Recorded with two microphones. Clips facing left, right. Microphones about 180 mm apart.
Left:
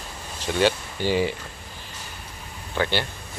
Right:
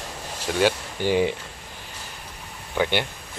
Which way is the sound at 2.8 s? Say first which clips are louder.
Right 1 dB; 15° right (ahead or behind).